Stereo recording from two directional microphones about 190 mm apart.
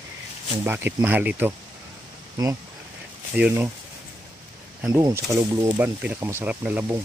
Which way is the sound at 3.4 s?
10° right (ahead or behind).